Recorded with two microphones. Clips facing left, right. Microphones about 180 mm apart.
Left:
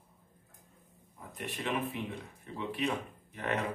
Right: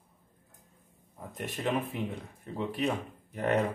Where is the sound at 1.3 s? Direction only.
40° right (ahead or behind).